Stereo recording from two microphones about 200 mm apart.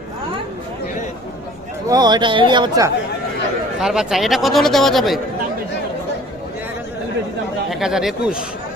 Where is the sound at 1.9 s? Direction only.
20° right (ahead or behind).